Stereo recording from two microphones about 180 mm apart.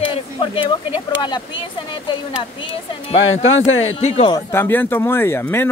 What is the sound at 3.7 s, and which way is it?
Speech, 90° left.